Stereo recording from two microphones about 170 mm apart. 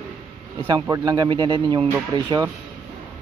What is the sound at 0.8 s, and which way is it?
Speech, 20° right (ahead or behind).